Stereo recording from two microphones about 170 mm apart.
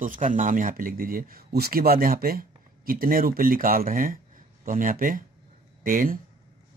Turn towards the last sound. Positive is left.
turn(degrees=-55)  # may be behind; listen again after turning